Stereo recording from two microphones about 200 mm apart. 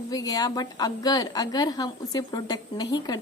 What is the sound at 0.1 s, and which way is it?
A woman's voice, 20° left (ahead or behind).